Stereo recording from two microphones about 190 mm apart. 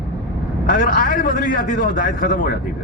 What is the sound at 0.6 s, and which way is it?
A man's voice, 45° left (ahead or behind).